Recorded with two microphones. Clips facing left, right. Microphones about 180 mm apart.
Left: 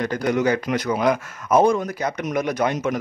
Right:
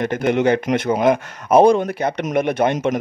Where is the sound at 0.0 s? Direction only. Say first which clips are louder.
Right 3 dB; 25° right (ahead or behind).